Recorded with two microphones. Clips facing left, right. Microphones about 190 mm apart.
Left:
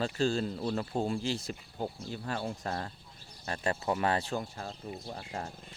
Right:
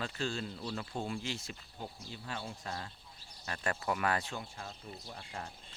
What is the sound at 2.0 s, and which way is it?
Speech, 50° left (ahead or behind).